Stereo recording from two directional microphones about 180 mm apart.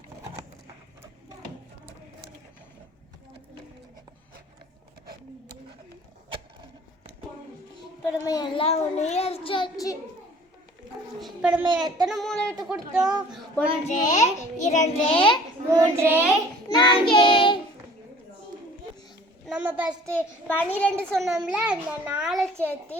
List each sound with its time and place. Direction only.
8.0 s a child's voice: 20° left (ahead or behind)
11.2 s child singing: 5° right (ahead or behind)
11.6 s speech: 25° right (ahead or behind)
12.0 s a child's voice: centre (ahead or behind)
13.8 s child singing: 45° left (ahead or behind)
15.7 s child singing: 15° right (ahead or behind)
16.6 s child singing: 25° left (ahead or behind)
19.5 s a sound: 10° right (ahead or behind)
20.1 s a child's voice: 10° left (ahead or behind)